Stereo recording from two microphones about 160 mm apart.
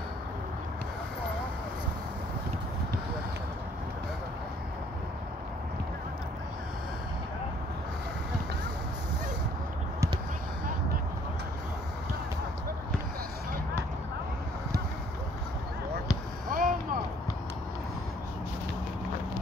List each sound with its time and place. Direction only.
16.4 s boat: 60° right (ahead or behind)